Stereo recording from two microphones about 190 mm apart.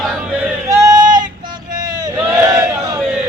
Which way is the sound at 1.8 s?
20° right (ahead or behind).